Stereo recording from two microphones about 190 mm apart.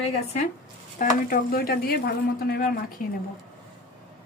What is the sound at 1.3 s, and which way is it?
A woman's voice, 50° left (ahead or behind).